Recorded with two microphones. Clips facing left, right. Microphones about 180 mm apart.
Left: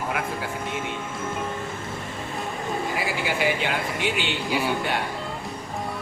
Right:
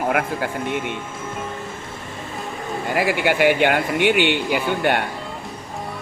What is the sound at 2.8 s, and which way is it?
Speech, 60° right (ahead or behind).